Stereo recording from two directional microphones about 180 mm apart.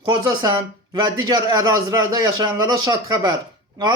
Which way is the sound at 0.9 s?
25° right (ahead or behind).